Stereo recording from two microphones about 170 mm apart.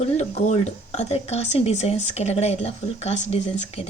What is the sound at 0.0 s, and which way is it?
Speech, 40° left (ahead or behind).